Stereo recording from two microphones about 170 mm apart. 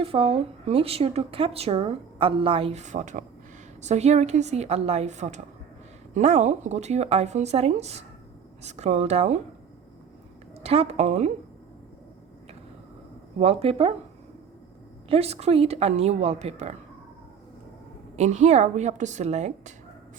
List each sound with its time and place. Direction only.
0.0 s speech: 35° right (ahead or behind)
10.6 s speech: 35° right (ahead or behind)
13.4 s speech: 35° right (ahead or behind)
15.1 s speech: 35° right (ahead or behind)
18.2 s a woman's voice: 45° right (ahead or behind)